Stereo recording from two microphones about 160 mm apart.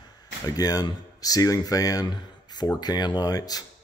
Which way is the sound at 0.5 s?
20° left (ahead or behind).